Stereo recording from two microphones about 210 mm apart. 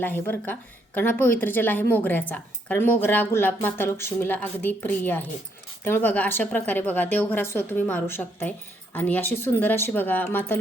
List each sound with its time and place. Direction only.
0.0 s a woman's voice: 10° left (ahead or behind)